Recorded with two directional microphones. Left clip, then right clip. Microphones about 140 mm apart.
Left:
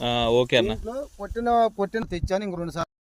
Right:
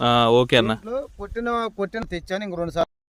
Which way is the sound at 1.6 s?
15° right (ahead or behind).